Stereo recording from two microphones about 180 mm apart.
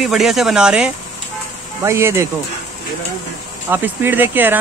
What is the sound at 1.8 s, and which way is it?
Speech, 15° right (ahead or behind).